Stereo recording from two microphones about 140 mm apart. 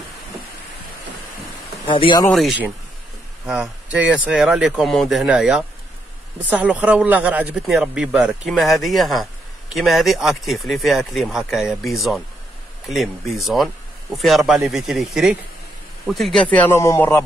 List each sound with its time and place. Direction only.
1.9 s speech: 35° left (ahead or behind)
3.4 s a man's voice: 5° right (ahead or behind); by 17.2 s 20° left (ahead or behind)